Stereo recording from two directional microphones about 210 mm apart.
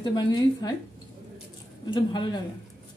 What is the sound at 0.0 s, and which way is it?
Speech, 20° left (ahead or behind).